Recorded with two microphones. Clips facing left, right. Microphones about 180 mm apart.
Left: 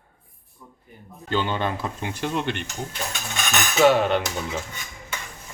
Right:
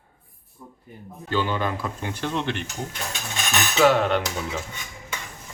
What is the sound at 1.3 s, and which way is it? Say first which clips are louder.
Speech: even; 25° left (ahead or behind).